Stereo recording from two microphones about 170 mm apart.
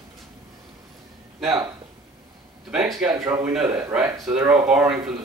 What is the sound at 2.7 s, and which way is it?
A man's voice, 5° right (ahead or behind).